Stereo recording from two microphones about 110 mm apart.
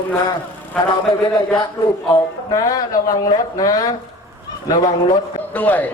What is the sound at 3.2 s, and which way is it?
Speech, 35° left (ahead or behind).